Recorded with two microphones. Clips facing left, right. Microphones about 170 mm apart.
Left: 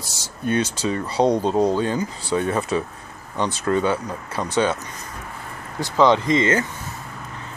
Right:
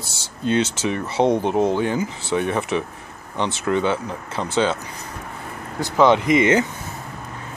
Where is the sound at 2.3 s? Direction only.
10° right (ahead or behind).